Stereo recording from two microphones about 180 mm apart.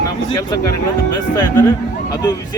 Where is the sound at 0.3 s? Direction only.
25° left (ahead or behind).